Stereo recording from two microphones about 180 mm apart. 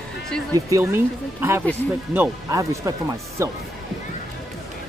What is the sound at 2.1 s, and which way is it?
Speech, 15° right (ahead or behind).